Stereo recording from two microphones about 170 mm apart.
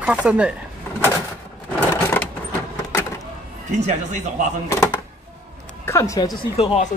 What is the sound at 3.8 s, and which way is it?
Speech, 40° right (ahead or behind).